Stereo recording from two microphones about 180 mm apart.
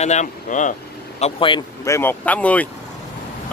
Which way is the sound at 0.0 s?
40° left (ahead or behind).